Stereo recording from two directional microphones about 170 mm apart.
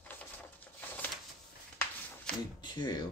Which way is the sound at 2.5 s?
25° left (ahead or behind).